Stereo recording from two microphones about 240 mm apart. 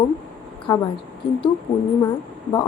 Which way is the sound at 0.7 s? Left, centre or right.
Centre.